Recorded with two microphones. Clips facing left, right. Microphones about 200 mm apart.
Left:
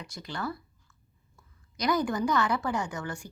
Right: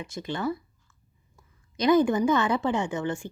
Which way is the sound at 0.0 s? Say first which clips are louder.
Right 6 dB; 25° right (ahead or behind).